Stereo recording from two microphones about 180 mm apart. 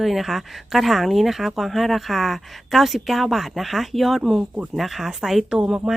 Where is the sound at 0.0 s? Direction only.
Centre (ahead or behind).